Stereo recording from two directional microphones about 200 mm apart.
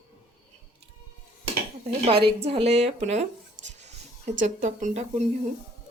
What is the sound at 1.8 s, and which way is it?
Speech, 25° right (ahead or behind).